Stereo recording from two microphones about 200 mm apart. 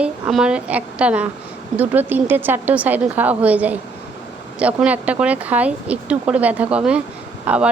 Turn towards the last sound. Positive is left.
turn(degrees=-5)  # may be behind; listen again after turning